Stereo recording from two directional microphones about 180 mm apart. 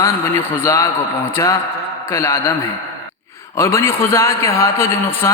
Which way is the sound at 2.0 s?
15° left (ahead or behind).